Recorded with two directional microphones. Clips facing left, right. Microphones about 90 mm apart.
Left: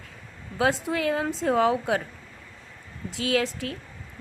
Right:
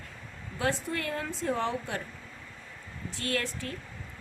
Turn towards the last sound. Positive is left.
turn(degrees=90)